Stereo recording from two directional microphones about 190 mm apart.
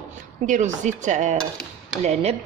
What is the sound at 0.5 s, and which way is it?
Speech, 40° right (ahead or behind).